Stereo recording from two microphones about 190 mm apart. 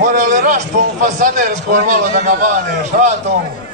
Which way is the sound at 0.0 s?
40° right (ahead or behind).